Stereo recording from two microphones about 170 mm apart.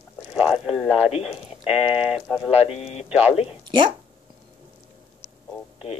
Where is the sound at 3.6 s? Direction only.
30° right (ahead or behind).